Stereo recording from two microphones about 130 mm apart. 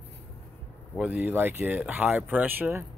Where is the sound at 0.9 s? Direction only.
10° right (ahead or behind).